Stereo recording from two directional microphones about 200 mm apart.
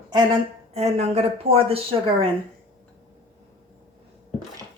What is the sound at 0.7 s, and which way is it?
A woman's voice, 30° right (ahead or behind).